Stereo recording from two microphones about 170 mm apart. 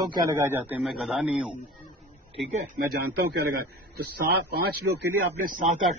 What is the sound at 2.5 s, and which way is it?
A man's voice, 50° right (ahead or behind).